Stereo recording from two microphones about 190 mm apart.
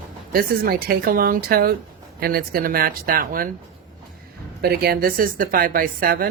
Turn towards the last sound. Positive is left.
turn(degrees=-50)  # may be behind; listen again after turning